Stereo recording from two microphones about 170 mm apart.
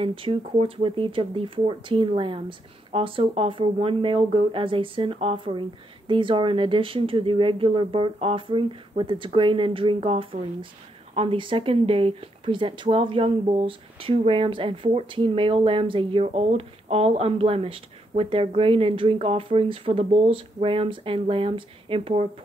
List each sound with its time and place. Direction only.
0.0 s speech: 30° right (ahead or behind)